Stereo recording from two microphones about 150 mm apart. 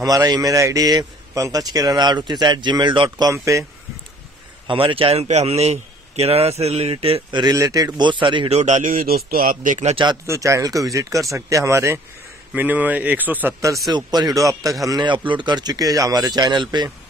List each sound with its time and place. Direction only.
0.0 s a man's voice: 25° right (ahead or behind)
4.6 s a man's voice: 35° right (ahead or behind)
7.4 s a man's voice: 25° right (ahead or behind)
8.5 s a man's voice: 50° right (ahead or behind)
10.2 s a man's voice: 20° right (ahead or behind)